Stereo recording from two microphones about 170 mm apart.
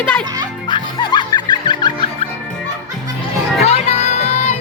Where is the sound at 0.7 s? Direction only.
25° left (ahead or behind).